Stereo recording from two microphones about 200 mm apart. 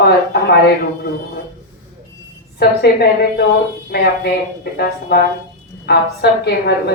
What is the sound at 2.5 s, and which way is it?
A woman's voice, 55° left (ahead or behind).